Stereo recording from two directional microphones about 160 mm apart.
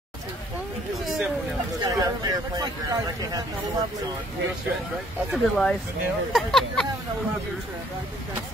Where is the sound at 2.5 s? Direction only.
25° right (ahead or behind).